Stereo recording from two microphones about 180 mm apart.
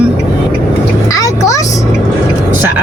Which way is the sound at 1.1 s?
20° left (ahead or behind).